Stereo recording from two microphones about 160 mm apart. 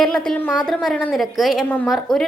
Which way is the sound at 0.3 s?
10° left (ahead or behind).